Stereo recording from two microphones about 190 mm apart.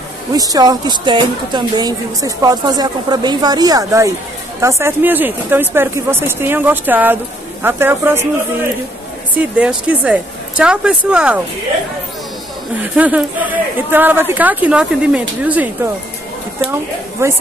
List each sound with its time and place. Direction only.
0.3 s a woman's voice: 20° right (ahead or behind)
9.3 s speech: 5° right (ahead or behind)
12.8 s speech: 5° right (ahead or behind)